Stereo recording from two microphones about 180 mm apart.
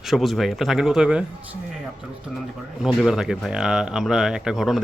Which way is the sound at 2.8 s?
Centre (ahead or behind).